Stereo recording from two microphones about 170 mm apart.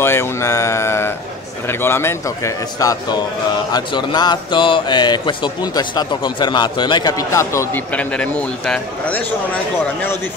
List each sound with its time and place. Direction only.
0.0 s a man's voice: 15° left (ahead or behind)